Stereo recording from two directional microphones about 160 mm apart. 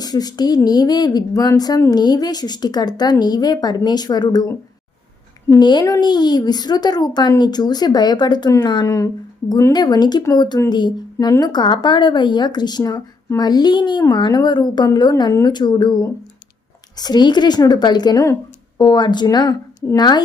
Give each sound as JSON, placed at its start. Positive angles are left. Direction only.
{"t": 0.0, "sound": "speech", "side_deg": 25}
{"t": 5.5, "sound": "speech", "side_deg": 25}